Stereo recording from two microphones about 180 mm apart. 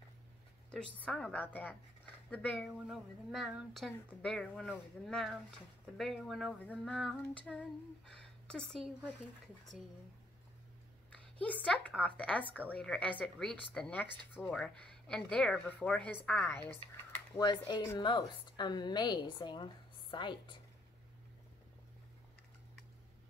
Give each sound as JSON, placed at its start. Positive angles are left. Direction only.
{"t": 1.0, "sound": "a woman's voice", "side_deg": 5}
{"t": 11.4, "sound": "a woman's voice", "side_deg": 10}
{"t": 17.4, "sound": "a woman's voice", "side_deg": 25}